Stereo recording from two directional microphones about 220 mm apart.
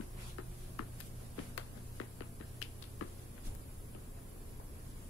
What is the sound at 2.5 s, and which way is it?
Finger snapping, 85° left.